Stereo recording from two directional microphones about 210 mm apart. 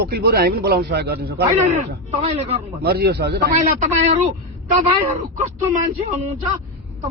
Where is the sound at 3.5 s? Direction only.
35° right (ahead or behind).